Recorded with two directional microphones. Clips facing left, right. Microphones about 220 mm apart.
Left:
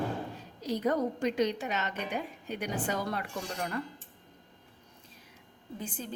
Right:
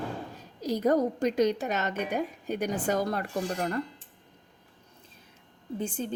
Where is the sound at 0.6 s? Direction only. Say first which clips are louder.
Right 4 dB; 40° right (ahead or behind).